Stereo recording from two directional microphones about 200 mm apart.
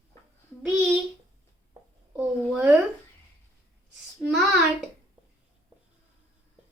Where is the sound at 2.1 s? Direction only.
10° right (ahead or behind).